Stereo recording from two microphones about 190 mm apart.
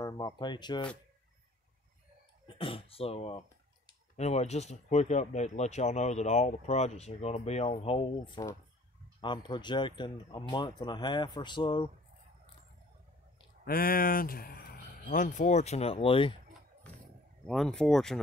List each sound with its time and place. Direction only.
0.0 s speech: 20° left (ahead or behind)
2.4 s speech: 30° left (ahead or behind)
13.7 s speech: 50° left (ahead or behind); by 16.3 s 30° left (ahead or behind)
17.5 s speech: centre (ahead or behind)